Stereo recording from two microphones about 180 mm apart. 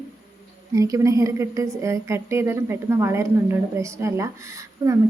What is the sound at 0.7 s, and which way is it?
A woman's voice, 20° right (ahead or behind).